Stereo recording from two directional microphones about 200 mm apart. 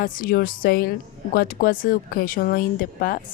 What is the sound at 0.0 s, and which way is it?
A woman's voice, 45° left (ahead or behind).